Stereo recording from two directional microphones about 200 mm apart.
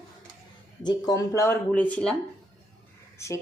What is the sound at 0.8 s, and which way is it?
Speech, 20° left (ahead or behind).